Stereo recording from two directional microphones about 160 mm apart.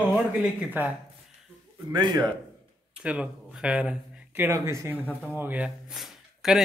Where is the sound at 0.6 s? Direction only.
10° right (ahead or behind).